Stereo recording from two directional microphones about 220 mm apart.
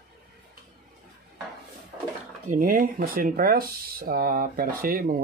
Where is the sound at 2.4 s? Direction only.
35° right (ahead or behind).